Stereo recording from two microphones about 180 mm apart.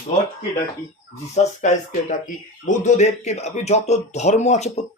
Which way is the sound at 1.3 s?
40° left (ahead or behind).